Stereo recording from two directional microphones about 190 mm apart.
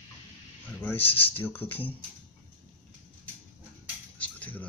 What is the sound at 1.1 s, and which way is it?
Speech, 30° left (ahead or behind).